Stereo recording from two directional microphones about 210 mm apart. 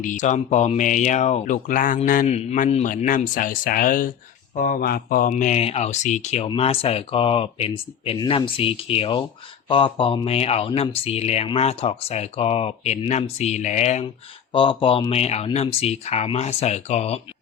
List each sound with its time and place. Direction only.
0.0 s speech: 35° left (ahead or behind)